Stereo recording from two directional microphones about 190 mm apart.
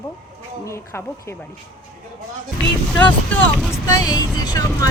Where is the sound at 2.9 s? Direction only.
10° left (ahead or behind).